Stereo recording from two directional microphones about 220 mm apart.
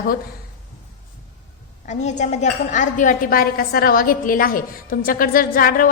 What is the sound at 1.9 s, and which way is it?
A woman's voice, 30° left (ahead or behind).